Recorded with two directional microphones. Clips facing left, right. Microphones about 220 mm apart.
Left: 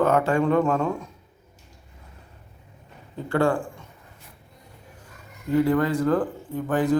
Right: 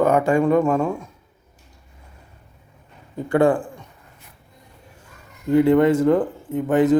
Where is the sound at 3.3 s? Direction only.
20° right (ahead or behind).